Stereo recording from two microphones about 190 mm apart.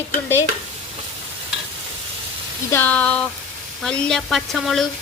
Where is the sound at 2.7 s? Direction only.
10° left (ahead or behind).